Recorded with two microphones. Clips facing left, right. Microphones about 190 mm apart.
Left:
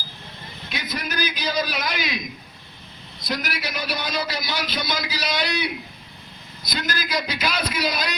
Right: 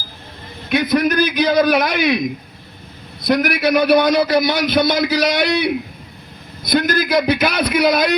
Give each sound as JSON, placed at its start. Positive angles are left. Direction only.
{"t": 0.7, "sound": "a man's voice", "side_deg": -55}